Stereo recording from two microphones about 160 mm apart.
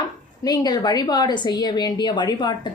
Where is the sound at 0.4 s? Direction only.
25° left (ahead or behind).